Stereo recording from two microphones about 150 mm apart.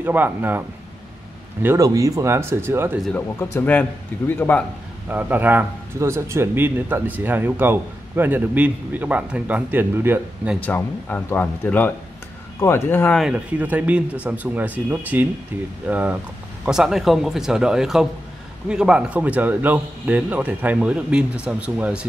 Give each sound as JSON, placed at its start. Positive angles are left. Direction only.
{"t": 0.0, "sound": "a man's voice", "side_deg": -10}
{"t": 3.1, "sound": "speech", "side_deg": 15}
{"t": 5.1, "sound": "a man's voice", "side_deg": -10}
{"t": 10.6, "sound": "speech", "side_deg": 10}
{"t": 13.2, "sound": "a man's voice", "side_deg": -10}